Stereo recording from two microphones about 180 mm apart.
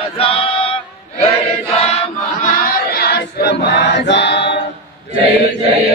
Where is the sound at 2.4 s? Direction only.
55° left (ahead or behind).